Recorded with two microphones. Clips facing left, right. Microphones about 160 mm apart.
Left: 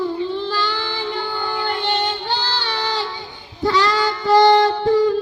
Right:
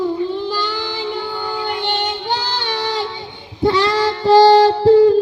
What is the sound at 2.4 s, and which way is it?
Child singing, 15° right (ahead or behind).